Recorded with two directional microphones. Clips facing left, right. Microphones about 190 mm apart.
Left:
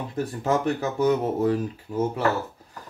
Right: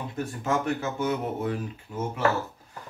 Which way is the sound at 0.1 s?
35° left (ahead or behind).